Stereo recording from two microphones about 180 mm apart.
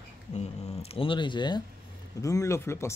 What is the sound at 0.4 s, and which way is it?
Speech, 30° left (ahead or behind).